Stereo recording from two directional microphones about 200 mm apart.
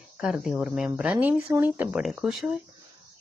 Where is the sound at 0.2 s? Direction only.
Centre (ahead or behind).